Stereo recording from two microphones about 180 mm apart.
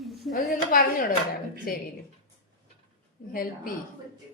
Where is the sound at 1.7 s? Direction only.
55° left (ahead or behind).